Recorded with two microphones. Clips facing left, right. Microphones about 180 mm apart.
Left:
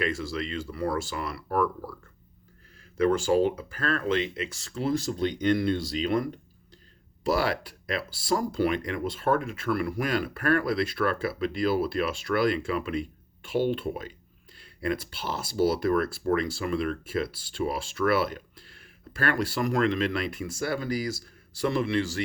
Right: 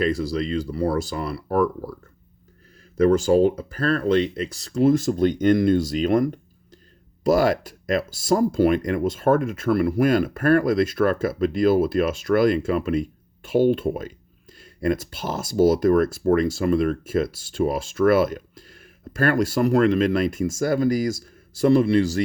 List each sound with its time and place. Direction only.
0.0 s speech: 35° right (ahead or behind)
3.0 s speech: 40° right (ahead or behind)
7.3 s speech: 45° right (ahead or behind)